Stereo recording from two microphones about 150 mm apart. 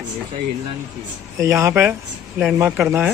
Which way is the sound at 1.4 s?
20° right (ahead or behind).